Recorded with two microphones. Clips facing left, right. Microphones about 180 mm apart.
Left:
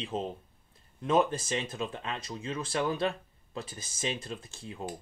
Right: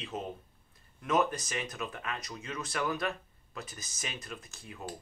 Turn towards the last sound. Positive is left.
turn(degrees=25)  # may be behind; listen again after turning